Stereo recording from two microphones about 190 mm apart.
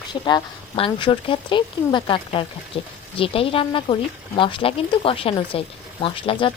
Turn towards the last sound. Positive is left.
turn(degrees=25)  # may be behind; listen again after turning